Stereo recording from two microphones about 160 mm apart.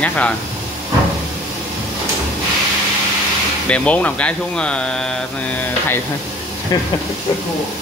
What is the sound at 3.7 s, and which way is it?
Speech, 10° left (ahead or behind).